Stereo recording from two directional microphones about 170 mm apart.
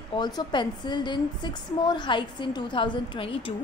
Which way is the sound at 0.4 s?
25° left (ahead or behind).